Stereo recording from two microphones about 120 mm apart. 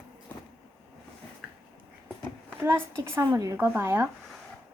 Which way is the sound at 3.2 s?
35° right (ahead or behind).